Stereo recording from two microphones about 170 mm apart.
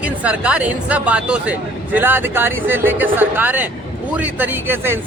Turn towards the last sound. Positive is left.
turn(degrees=-15)  # may be behind; listen again after turning